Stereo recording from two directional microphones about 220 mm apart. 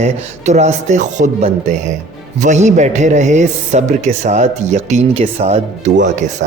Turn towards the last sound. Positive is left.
turn(degrees=-35)  # may be behind; listen again after turning